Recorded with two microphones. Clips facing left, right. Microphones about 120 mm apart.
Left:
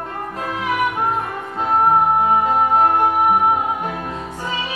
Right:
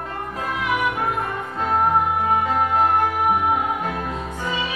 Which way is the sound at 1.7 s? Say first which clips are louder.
Left 4 dB; 30° left (ahead or behind).